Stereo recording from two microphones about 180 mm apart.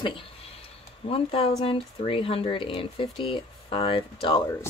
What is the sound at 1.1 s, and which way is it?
Speech, 30° left (ahead or behind).